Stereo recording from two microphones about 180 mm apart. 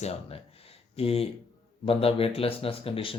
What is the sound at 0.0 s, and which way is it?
Speech, 35° left (ahead or behind).